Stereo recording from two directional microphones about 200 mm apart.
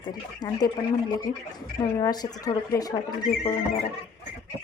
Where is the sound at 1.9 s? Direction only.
20° left (ahead or behind).